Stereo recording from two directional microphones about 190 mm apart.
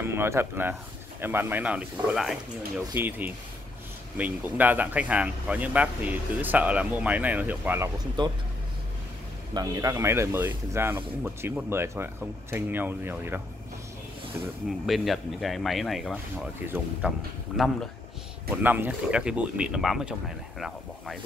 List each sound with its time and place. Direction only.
0.0 s speech: 15° right (ahead or behind)
8.2 s speech: 25° right (ahead or behind)
9.5 s speech: 20° right (ahead or behind)
14.9 s speech: centre (ahead or behind)
16.6 s speech: 10° right (ahead or behind)